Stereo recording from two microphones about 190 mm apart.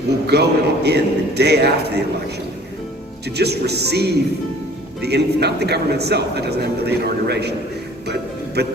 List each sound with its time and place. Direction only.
0.3 s a man's voice: 60° right (ahead or behind)
3.2 s a man's voice: 60° right (ahead or behind)
8.6 s a man's voice: 60° right (ahead or behind)